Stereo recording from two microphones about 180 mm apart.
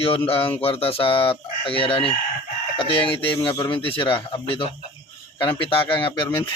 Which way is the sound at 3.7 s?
30° left (ahead or behind).